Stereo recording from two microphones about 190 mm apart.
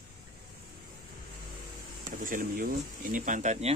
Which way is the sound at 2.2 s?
45° right (ahead or behind).